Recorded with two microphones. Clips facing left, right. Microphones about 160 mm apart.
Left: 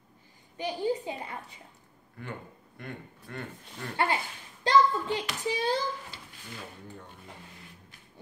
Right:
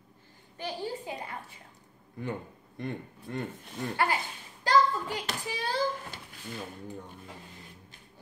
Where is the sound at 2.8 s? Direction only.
20° right (ahead or behind).